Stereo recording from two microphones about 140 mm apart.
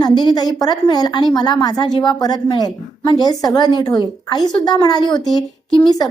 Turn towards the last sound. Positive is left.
turn(degrees=30)  # may be behind; listen again after turning